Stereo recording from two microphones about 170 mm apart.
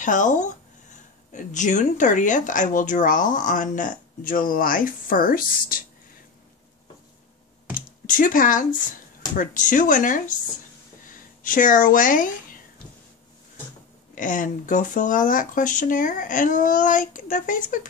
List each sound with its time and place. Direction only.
0.0 s speech: 50° left (ahead or behind)
8.1 s speech: 55° left (ahead or behind)
11.4 s speech: 50° left (ahead or behind)
14.1 s speech: 50° left (ahead or behind)